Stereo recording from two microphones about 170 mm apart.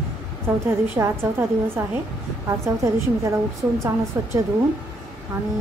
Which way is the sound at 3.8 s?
15° right (ahead or behind).